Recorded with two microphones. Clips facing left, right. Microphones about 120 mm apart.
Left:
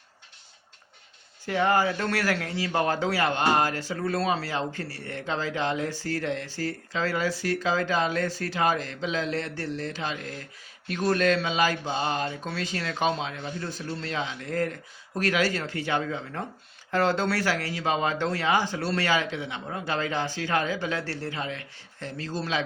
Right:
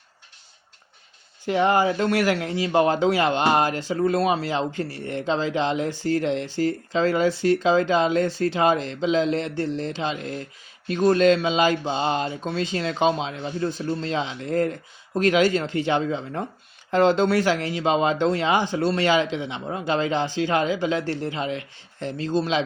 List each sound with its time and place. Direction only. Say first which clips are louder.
1.5 s speech: right 4 dB; 20° right (ahead or behind)